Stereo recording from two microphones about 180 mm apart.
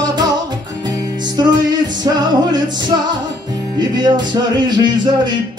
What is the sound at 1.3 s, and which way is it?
Music, 25° right (ahead or behind).